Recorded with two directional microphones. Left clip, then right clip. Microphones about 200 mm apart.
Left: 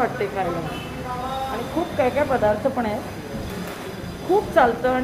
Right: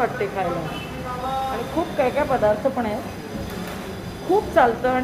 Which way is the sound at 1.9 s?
Centre (ahead or behind).